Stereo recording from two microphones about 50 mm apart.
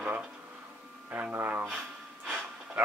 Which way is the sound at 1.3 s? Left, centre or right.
Right.